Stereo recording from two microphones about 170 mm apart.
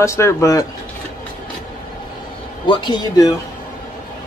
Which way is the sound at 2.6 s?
25° left (ahead or behind).